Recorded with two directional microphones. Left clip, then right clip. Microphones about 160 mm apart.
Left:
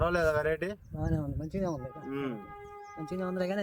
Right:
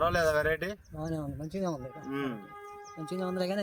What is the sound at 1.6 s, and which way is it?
Speech, 5° left (ahead or behind).